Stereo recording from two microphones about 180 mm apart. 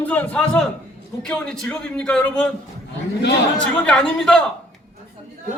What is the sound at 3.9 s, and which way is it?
Speech, 5° left (ahead or behind).